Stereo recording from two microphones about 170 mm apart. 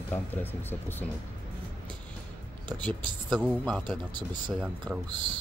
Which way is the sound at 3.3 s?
5° right (ahead or behind).